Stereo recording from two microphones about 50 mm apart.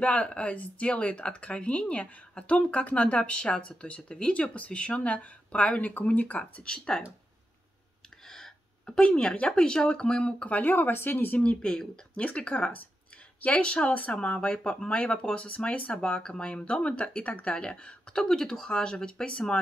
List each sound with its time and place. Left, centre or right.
0.0 s speech: left
6.6 s speech: centre
8.3 s speech: centre
10.2 s speech: left
10.6 s speech: left
11.4 s speech: left
15.3 s speech: left
16.0 s speech: centre
17.6 s speech: centre